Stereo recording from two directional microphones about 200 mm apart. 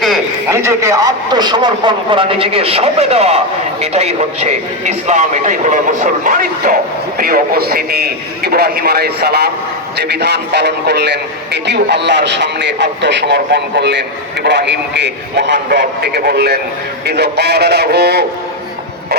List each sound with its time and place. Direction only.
0.5 s a man's voice: 15° right (ahead or behind); by 18.3 s 55° right (ahead or behind)